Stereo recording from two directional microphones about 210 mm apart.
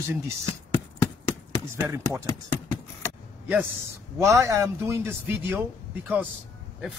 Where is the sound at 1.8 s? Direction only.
15° right (ahead or behind).